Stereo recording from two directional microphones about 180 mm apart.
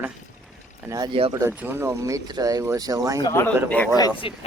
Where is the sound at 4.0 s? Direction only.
30° left (ahead or behind).